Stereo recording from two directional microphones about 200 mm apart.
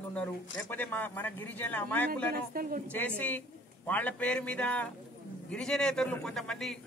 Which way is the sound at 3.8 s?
10° left (ahead or behind).